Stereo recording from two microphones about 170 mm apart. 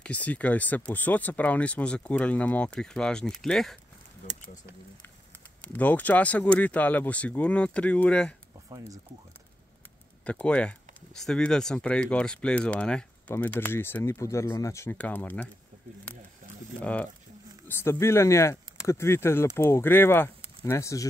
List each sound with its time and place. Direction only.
0.0 s speech: 10° left (ahead or behind)
5.6 s speech: 10° left (ahead or behind)
8.6 s speech: 20° right (ahead or behind)
10.2 s speech: 5° left (ahead or behind)
16.1 s a sound: 10° left (ahead or behind)
16.8 s speech: 5° left (ahead or behind)